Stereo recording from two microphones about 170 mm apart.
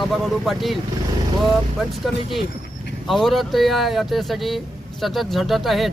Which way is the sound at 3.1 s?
Centre (ahead or behind).